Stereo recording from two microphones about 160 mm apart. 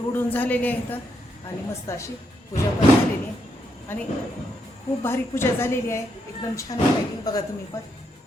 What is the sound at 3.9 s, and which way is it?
A woman's voice, 10° left (ahead or behind).